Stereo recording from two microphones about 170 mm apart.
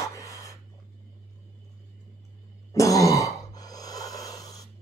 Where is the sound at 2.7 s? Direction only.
20° left (ahead or behind).